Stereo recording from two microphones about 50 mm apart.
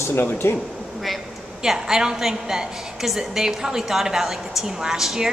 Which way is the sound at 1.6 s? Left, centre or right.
Centre.